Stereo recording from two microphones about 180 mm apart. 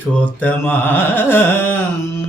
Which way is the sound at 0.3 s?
10° left (ahead or behind).